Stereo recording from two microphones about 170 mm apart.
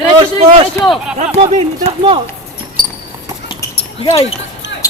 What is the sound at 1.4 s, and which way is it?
Speech, 35° right (ahead or behind).